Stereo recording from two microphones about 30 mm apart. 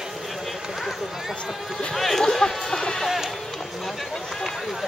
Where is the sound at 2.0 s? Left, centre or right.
Centre.